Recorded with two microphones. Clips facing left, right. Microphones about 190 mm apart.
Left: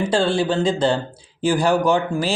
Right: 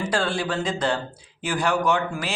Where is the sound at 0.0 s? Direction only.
30° left (ahead or behind).